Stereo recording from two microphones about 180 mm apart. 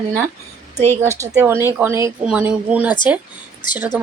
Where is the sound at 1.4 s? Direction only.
15° right (ahead or behind).